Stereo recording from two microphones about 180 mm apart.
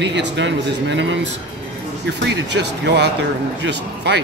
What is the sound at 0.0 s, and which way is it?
Speech, 80° right.